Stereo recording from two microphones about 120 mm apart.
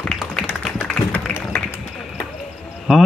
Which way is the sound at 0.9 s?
10° left (ahead or behind).